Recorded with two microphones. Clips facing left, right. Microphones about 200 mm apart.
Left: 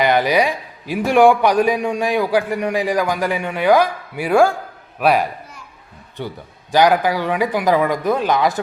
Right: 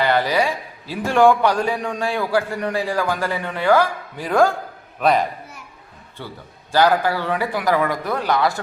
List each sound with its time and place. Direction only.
0.0 s a man's voice: 15° left (ahead or behind)